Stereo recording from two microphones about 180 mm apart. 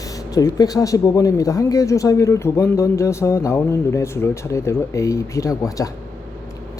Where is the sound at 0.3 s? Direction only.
20° left (ahead or behind).